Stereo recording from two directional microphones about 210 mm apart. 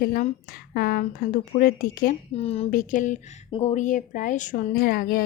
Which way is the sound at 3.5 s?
30° left (ahead or behind).